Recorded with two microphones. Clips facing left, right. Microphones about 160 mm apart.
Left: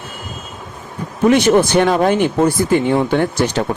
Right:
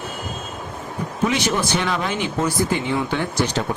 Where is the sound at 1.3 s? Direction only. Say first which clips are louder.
Left 14 dB; 55° left (ahead or behind).